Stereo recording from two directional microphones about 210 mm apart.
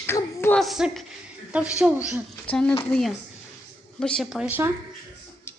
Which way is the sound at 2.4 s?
5° left (ahead or behind).